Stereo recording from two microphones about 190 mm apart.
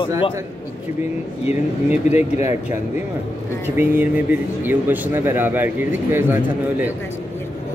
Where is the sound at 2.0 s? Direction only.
35° left (ahead or behind).